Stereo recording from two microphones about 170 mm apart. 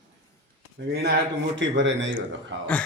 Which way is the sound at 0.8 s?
90° right.